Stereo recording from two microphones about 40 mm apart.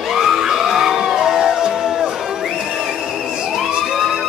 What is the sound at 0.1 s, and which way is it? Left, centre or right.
Music, centre.